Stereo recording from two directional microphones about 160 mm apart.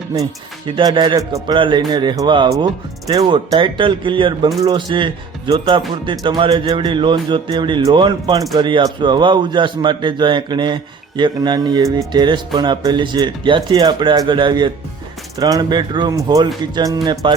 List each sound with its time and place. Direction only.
0.8 s speech: 25° right (ahead or behind)